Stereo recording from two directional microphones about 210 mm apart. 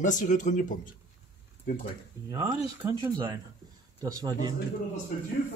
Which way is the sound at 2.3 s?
15° right (ahead or behind).